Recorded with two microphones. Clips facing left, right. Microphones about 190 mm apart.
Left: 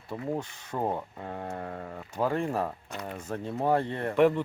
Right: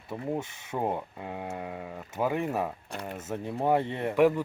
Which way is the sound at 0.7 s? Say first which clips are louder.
Even; 10° right (ahead or behind).